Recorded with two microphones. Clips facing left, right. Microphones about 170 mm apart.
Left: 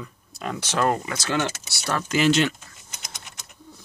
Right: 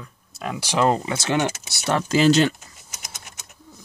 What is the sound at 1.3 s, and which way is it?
Speech, 15° right (ahead or behind).